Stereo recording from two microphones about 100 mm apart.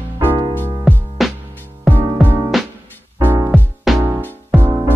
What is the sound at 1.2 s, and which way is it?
Music, centre (ahead or behind).